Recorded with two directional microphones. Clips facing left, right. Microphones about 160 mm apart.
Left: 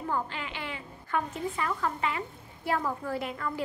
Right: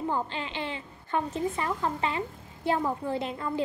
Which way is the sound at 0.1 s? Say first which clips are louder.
Right 2 dB; 25° right (ahead or behind).